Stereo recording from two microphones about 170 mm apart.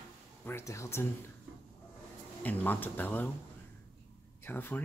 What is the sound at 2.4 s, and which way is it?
Speech, 10° left (ahead or behind).